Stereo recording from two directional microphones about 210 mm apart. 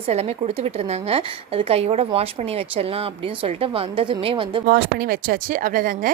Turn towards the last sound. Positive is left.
turn(degrees=-40)  # may be behind; listen again after turning